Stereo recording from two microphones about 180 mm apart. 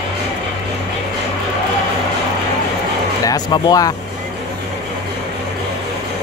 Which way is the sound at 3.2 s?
20° left (ahead or behind).